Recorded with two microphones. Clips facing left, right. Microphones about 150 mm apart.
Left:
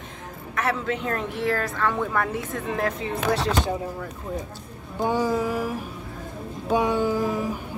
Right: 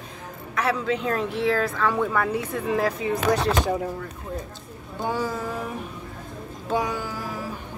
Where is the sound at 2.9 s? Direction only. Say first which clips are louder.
Right 2 dB; 30° left (ahead or behind).